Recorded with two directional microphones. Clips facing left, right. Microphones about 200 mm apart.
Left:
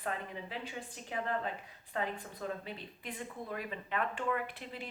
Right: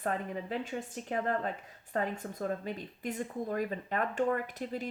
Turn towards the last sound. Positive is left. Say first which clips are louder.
# right 5 dB
turn(degrees=-40)  # may be behind; listen again after turning